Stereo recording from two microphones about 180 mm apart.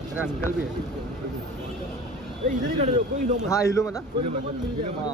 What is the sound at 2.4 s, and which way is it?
Speech, 40° right (ahead or behind).